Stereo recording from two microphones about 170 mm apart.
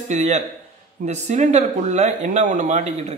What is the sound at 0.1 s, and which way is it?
A man's voice, 45° right (ahead or behind).